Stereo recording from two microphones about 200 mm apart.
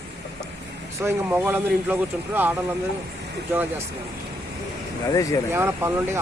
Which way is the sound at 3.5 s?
10° right (ahead or behind).